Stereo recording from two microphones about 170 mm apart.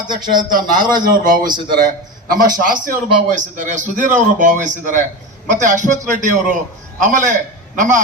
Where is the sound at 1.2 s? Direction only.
55° right (ahead or behind).